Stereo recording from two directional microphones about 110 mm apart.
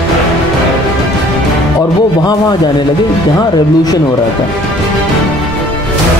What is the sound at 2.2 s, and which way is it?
Speech, 40° left (ahead or behind).